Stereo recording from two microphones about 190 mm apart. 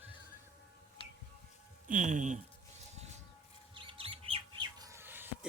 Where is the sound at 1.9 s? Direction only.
40° right (ahead or behind).